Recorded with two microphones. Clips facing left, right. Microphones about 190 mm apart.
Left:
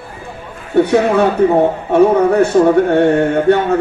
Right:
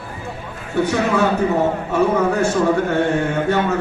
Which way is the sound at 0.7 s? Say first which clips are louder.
Left 7 dB; 60° left (ahead or behind).